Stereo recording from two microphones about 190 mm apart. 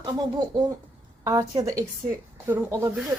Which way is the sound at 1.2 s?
20° right (ahead or behind).